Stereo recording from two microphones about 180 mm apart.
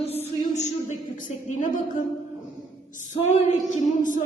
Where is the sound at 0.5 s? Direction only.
40° left (ahead or behind).